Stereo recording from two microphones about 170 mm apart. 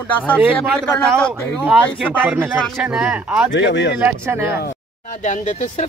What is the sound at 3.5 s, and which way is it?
Speech, 90° left.